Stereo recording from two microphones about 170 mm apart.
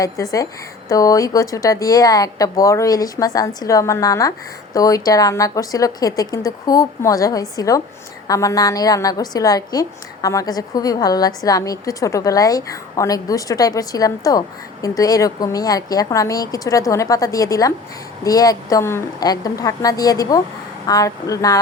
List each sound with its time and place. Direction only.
0.0 s a woman's voice: 20° left (ahead or behind)